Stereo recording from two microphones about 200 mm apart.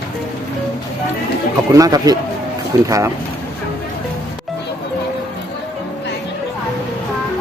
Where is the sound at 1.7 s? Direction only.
20° right (ahead or behind).